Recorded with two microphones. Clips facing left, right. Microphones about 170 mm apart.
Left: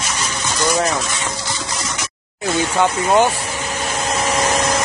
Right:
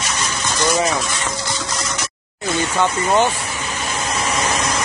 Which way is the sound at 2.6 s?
10° left (ahead or behind).